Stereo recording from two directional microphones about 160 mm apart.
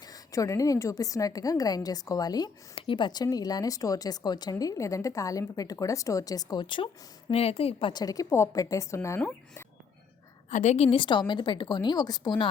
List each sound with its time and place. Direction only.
0.0 s a woman's voice: 20° left (ahead or behind)
10.5 s a woman's voice: 45° left (ahead or behind); by 12.5 s 25° left (ahead or behind)